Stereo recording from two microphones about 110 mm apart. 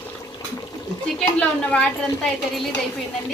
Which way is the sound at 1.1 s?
10° left (ahead or behind).